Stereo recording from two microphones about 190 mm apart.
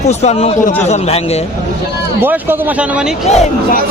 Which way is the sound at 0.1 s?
35° left (ahead or behind).